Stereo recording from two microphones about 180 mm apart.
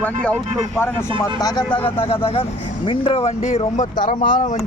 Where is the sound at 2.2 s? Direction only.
30° left (ahead or behind).